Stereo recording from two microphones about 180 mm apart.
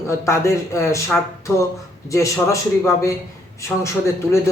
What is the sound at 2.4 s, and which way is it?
Speech, 15° left (ahead or behind).